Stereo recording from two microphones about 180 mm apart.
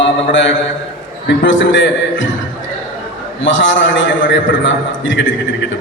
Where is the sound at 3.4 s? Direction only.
90° left.